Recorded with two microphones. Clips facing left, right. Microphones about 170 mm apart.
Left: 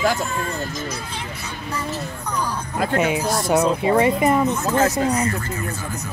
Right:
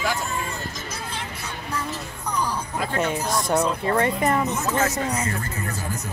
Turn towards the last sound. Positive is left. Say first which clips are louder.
# left 5 dB
turn(degrees=35)  # may be behind; listen again after turning